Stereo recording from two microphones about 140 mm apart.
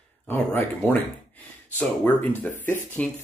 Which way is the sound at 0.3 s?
10° left (ahead or behind).